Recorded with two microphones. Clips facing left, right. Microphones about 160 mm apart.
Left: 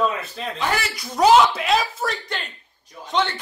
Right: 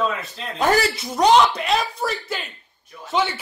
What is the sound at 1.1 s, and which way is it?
Speech, centre (ahead or behind).